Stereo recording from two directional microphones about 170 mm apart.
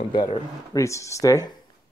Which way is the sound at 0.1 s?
25° left (ahead or behind).